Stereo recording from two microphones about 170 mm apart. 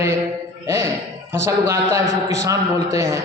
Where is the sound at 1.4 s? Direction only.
15° right (ahead or behind).